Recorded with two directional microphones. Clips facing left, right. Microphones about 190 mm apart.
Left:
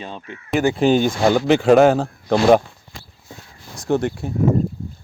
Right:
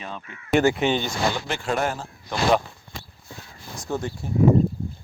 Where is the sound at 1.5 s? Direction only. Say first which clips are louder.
Left 14 dB; 90° left; by 2.4 s 70° left (ahead or behind).